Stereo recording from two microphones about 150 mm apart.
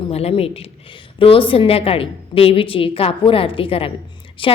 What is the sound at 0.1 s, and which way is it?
A woman's voice, 40° left (ahead or behind).